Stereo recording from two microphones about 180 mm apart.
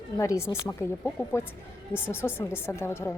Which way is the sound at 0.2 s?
15° left (ahead or behind).